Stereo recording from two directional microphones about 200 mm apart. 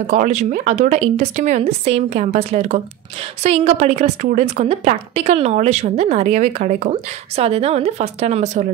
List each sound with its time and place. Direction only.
0.0 s a woman's voice: 35° right (ahead or behind)